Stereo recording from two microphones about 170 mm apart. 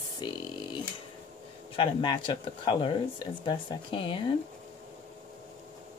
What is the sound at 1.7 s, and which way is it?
Speech, 25° left (ahead or behind).